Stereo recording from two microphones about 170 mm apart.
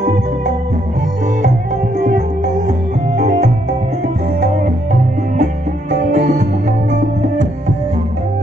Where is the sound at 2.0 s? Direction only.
45° right (ahead or behind).